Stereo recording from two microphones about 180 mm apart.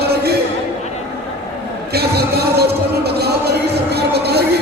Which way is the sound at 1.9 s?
60° right (ahead or behind).